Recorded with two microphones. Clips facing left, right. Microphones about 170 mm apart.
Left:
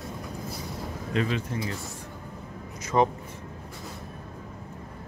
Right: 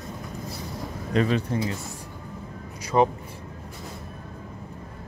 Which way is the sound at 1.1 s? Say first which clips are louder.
Right 5 dB; 40° right (ahead or behind).